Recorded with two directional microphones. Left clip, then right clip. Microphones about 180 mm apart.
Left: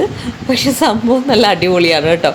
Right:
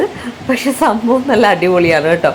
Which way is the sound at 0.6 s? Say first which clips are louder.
Even; centre (ahead or behind).